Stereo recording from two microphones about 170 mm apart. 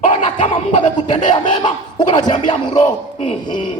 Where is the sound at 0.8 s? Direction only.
30° left (ahead or behind).